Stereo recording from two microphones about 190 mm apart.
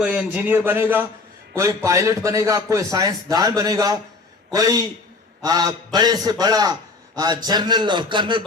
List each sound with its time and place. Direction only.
0.0 s a man's voice: 5° right (ahead or behind); by 8.4 s 25° right (ahead or behind)